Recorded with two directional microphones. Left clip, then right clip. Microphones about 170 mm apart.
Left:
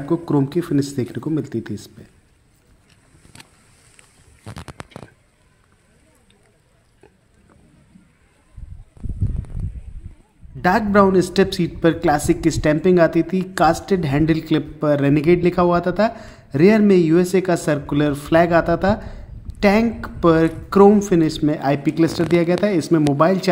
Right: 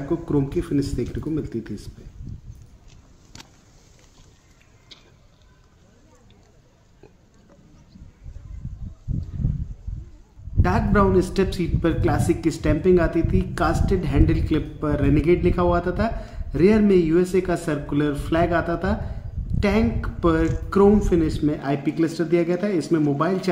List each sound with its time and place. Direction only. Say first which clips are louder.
0.1 s a man's voice: left 4 dB; 35° left (ahead or behind)
3.3 s a sound: even; centre (ahead or behind)
10.6 s a man's voice: left 6 dB; 35° left (ahead or behind)